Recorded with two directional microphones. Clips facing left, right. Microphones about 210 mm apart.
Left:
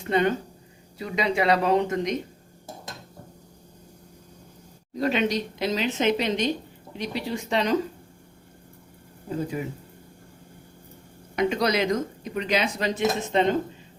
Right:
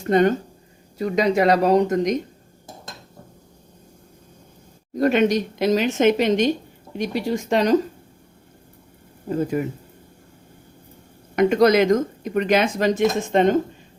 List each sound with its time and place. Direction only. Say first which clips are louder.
0.0 s speech: right 6 dB; 45° right (ahead or behind)
4.9 s speech: right 6 dB; 50° right (ahead or behind)
9.5 s speech: right 7 dB; 55° right (ahead or behind)
11.3 s speech: right 8 dB; 50° right (ahead or behind)